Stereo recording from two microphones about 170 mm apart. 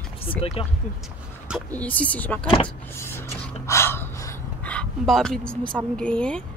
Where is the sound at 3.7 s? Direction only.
15° left (ahead or behind).